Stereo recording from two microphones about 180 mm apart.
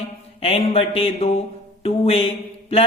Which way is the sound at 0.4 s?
35° left (ahead or behind).